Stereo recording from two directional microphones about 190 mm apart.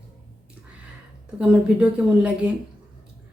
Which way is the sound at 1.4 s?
5° right (ahead or behind).